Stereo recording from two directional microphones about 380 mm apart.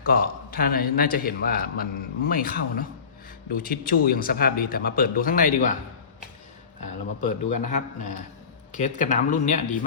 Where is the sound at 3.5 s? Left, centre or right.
Left.